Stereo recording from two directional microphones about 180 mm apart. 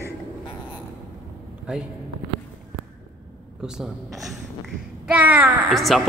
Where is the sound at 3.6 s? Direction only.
5° right (ahead or behind).